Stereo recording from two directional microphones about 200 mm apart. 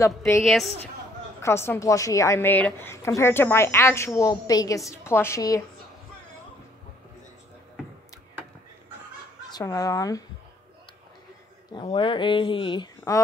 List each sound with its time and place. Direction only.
0.4 s a woman's voice: centre (ahead or behind)
1.4 s a woman's voice: 10° left (ahead or behind)
9.5 s a woman's voice: 20° left (ahead or behind)
11.7 s speech: 25° left (ahead or behind)